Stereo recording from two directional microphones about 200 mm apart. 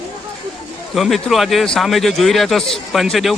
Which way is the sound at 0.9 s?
Centre (ahead or behind).